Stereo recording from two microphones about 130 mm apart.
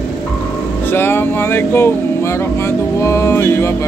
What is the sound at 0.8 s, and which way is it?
Music, 15° left (ahead or behind).